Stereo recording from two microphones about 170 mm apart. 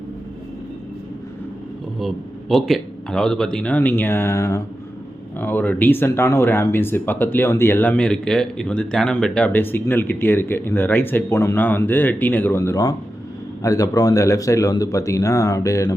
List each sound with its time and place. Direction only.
2.0 s a man's voice: centre (ahead or behind); by 16.0 s 20° left (ahead or behind)